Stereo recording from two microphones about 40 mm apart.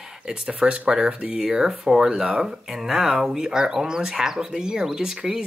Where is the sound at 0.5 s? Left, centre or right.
Right.